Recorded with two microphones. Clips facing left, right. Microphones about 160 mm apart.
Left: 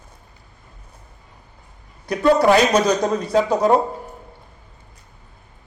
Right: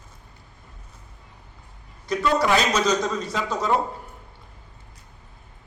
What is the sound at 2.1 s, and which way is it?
A man's voice, 55° left (ahead or behind).